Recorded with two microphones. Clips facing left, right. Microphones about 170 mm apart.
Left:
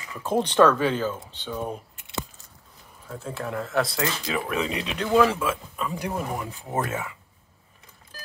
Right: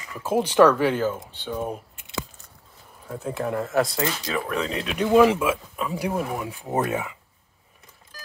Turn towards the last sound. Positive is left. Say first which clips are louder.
# right 3 dB
turn(degrees=-20)  # may be behind; listen again after turning